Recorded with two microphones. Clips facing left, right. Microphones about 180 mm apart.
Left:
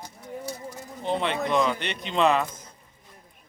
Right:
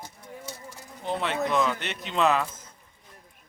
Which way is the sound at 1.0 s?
25° left (ahead or behind).